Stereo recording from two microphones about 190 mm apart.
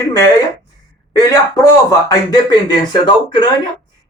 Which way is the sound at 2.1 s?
20° left (ahead or behind).